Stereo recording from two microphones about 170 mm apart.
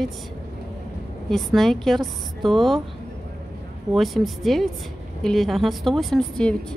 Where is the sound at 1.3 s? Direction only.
Centre (ahead or behind).